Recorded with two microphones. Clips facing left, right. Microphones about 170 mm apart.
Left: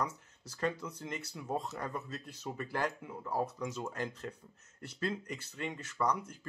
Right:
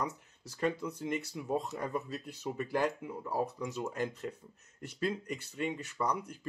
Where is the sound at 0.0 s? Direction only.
15° right (ahead or behind).